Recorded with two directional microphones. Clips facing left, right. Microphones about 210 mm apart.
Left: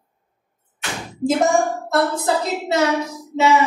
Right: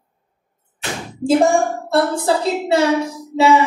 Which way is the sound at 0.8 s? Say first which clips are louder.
Left 1 dB; 30° right (ahead or behind).